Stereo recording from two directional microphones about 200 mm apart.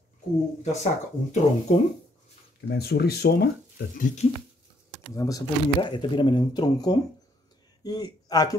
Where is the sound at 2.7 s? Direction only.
55° left (ahead or behind).